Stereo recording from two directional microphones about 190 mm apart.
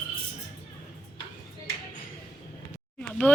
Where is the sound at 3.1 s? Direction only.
5° left (ahead or behind).